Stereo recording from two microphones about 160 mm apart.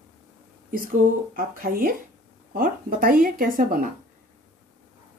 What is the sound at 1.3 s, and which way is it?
A woman's voice, 65° right (ahead or behind).